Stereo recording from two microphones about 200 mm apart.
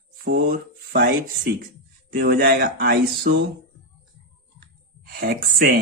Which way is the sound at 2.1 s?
50° right (ahead or behind).